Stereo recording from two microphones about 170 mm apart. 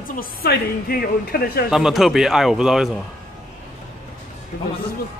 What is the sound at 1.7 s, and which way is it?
Speech, centre (ahead or behind).